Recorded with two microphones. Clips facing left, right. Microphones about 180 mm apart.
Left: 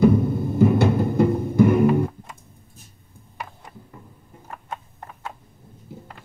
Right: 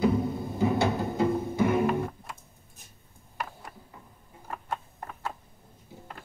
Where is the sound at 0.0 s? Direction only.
55° left (ahead or behind).